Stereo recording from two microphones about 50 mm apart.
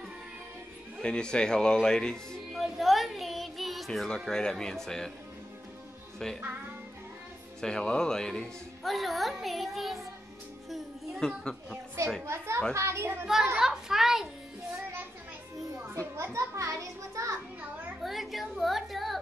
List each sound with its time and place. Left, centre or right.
1.0 s speech: centre
2.5 s music: centre
4.3 s speech: centre
6.1 s speech: centre
7.6 s speech: centre
8.8 s speech: centre
11.1 s a child's voice: centre
12.3 s a child's voice: right
13.6 s music: centre
16.2 s children playing: right
18.0 s a sound: centre